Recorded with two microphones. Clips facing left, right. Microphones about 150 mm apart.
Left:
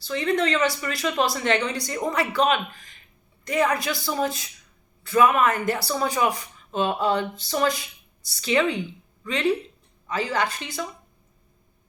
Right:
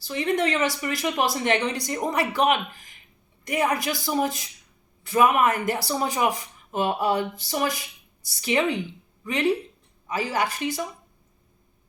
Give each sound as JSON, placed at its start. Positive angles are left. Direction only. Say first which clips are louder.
{"t": 0.1, "sound": "speech", "louder": "left 1 dB", "side_deg": -15}
{"t": 8.9, "sound": "a sound", "louder": "left 1 dB", "side_deg": -20}
{"t": 10.1, "sound": "speech", "louder": "even", "side_deg": -10}